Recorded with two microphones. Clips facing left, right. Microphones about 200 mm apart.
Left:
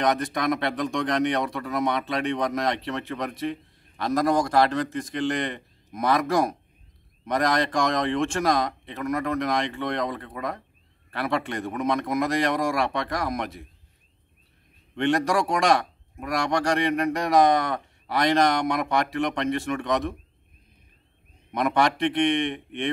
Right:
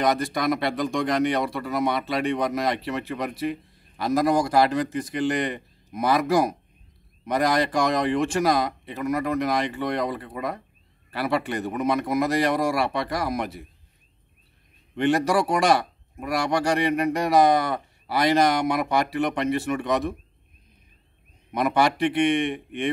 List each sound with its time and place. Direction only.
0.0 s speech: centre (ahead or behind)
15.0 s speech: 5° right (ahead or behind)
21.5 s speech: 5° right (ahead or behind)